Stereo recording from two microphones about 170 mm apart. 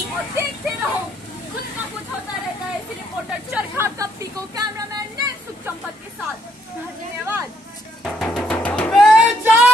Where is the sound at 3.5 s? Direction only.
15° right (ahead or behind).